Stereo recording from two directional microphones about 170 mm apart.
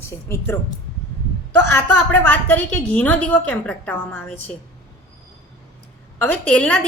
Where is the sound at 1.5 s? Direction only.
10° left (ahead or behind).